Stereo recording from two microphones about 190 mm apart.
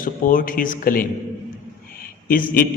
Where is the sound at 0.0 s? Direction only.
45° left (ahead or behind).